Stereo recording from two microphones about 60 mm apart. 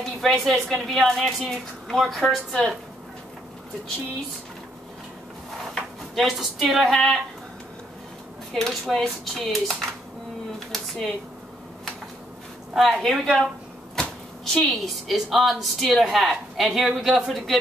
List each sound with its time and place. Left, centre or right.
0.2 s speech: centre
5.8 s speech: centre
8.5 s speech: centre
10.7 s a sound: centre
12.7 s speech: centre